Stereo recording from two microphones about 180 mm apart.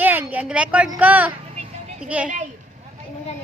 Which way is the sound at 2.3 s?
45° right (ahead or behind).